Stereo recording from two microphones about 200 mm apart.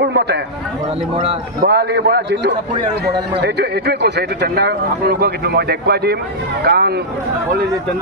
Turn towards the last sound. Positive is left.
turn(degrees=-50)  # may be behind; listen again after turning